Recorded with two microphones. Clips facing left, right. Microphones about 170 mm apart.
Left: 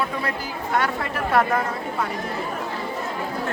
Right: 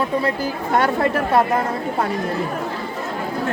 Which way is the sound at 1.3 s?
25° right (ahead or behind).